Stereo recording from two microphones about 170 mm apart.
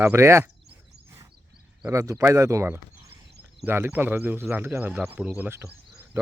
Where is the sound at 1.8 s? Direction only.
15° right (ahead or behind).